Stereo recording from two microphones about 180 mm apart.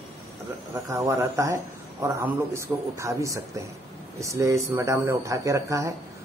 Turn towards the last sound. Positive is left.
turn(degrees=-15)  # may be behind; listen again after turning